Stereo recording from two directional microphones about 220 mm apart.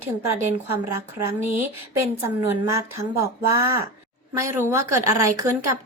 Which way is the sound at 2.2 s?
15° right (ahead or behind).